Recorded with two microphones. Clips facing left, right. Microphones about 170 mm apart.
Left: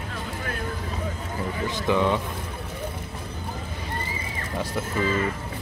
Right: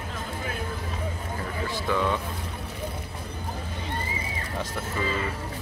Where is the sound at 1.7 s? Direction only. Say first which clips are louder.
Left 4 dB; 20° left (ahead or behind).